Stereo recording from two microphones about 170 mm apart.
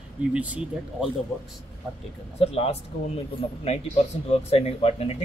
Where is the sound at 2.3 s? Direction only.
35° left (ahead or behind).